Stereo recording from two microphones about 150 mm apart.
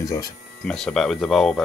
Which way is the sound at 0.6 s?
5° left (ahead or behind).